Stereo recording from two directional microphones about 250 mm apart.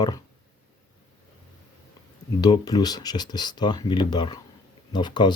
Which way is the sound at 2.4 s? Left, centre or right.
Centre.